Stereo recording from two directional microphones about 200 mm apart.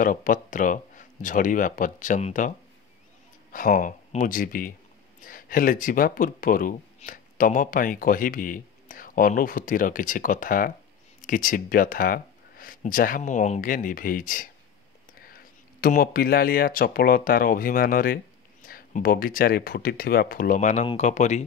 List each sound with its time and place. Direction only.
0.0 s speech: 45° left (ahead or behind)
3.5 s speech: 45° left (ahead or behind)